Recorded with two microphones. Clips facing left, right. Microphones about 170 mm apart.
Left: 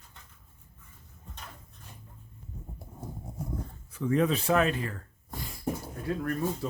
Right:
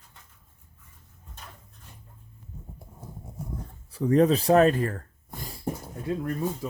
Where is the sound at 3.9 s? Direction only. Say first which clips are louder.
Right 6 dB; 40° right (ahead or behind).